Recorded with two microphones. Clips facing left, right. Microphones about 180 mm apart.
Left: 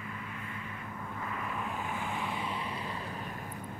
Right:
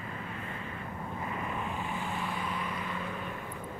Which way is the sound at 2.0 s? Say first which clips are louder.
Right 1 dB; 15° left (ahead or behind).